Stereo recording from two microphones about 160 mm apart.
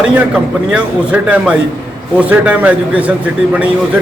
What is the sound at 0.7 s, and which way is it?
A man's voice, 10° right (ahead or behind).